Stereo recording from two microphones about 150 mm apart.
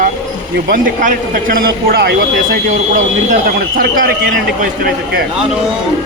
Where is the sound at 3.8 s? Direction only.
80° right.